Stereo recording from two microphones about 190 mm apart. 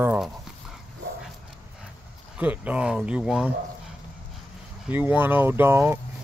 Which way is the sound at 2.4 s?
5° right (ahead or behind).